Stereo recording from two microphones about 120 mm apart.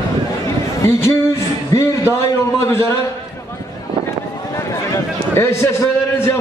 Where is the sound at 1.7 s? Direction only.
25° left (ahead or behind).